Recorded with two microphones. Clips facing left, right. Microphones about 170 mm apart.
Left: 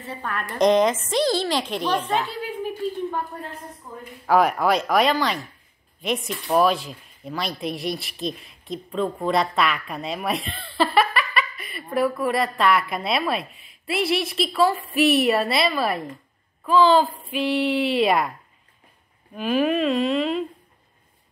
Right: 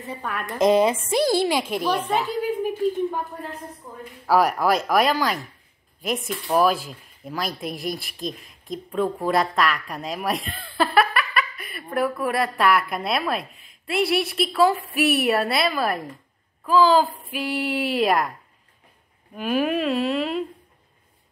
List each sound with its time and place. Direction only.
0.2 s a woman's voice: 5° right (ahead or behind)
4.3 s a woman's voice: 5° right (ahead or behind)
13.4 s a woman's voice: 50° right (ahead or behind)
14.0 s speech: centre (ahead or behind)
19.3 s a woman's voice: 5° right (ahead or behind)